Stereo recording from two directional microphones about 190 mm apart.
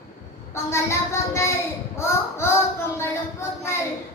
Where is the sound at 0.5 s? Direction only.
15° left (ahead or behind).